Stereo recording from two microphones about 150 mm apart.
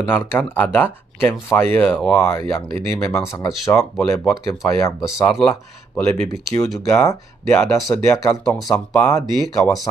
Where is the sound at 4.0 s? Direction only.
5° left (ahead or behind).